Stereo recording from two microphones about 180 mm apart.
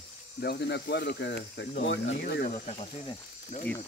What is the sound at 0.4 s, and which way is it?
Speech, 65° left (ahead or behind).